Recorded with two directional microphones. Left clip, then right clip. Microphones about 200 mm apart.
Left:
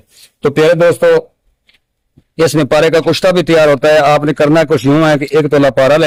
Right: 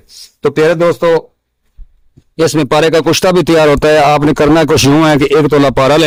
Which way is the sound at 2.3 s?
10° right (ahead or behind).